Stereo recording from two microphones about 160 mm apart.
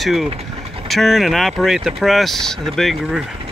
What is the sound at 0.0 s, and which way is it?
Speech, centre (ahead or behind).